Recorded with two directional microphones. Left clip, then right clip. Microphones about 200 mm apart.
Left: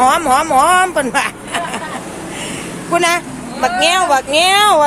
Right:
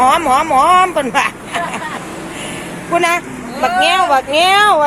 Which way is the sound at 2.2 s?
60° left (ahead or behind).